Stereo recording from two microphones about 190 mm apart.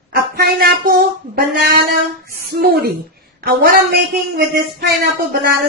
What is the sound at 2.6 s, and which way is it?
Speech, 55° right (ahead or behind).